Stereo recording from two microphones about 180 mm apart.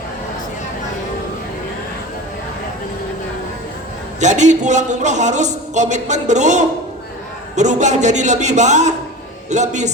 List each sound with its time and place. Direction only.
4.2 s a man's voice: 40° right (ahead or behind)